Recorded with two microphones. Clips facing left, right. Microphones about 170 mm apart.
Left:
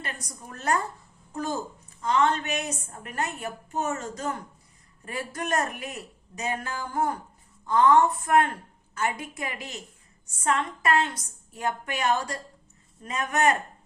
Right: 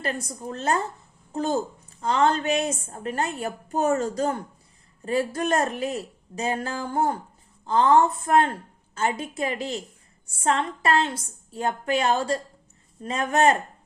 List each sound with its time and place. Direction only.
0.0 s a woman's voice: 30° right (ahead or behind)